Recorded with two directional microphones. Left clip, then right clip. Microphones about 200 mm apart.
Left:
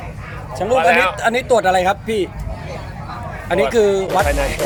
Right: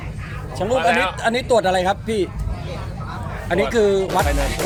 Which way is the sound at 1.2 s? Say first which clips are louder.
Left 3 dB; centre (ahead or behind).